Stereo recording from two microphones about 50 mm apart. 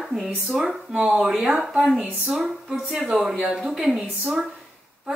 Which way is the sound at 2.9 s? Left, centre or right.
Right.